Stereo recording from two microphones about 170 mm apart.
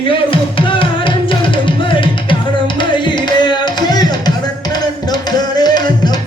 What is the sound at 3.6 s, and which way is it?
Music, 25° left (ahead or behind).